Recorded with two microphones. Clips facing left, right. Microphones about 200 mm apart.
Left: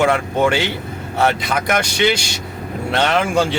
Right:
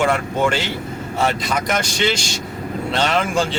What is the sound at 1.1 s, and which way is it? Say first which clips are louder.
Speech: left 3 dB; 60° left (ahead or behind).